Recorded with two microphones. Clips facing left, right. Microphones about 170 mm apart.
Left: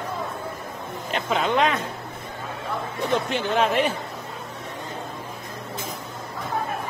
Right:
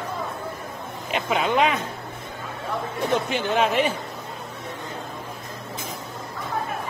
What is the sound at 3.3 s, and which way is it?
Speech, centre (ahead or behind).